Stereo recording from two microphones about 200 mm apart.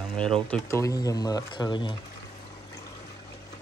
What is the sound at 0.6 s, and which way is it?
Speech, 15° left (ahead or behind).